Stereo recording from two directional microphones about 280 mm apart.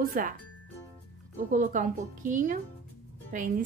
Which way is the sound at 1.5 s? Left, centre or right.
Right.